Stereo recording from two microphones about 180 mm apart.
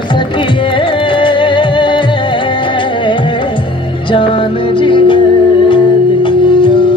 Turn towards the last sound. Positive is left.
turn(degrees=25)  # may be behind; listen again after turning